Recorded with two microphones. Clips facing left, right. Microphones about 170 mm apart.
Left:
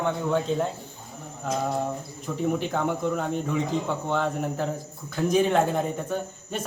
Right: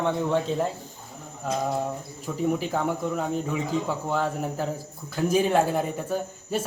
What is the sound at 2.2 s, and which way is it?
A man's voice, 5° right (ahead or behind).